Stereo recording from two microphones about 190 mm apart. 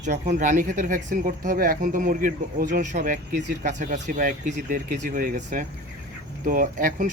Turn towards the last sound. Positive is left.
turn(degrees=-45)  # may be behind; listen again after turning